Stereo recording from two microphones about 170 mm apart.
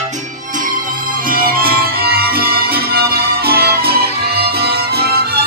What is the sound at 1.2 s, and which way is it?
Music, 60° right (ahead or behind).